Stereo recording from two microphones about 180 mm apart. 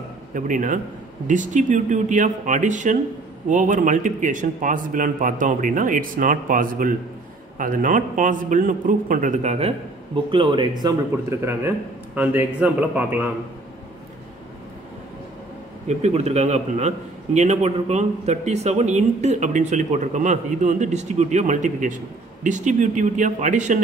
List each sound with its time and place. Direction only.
0.3 s a man's voice: 45° right (ahead or behind); by 13.3 s 10° right (ahead or behind)
15.9 s a man's voice: 35° right (ahead or behind)